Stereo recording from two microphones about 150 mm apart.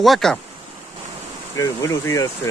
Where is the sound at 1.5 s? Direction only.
20° left (ahead or behind).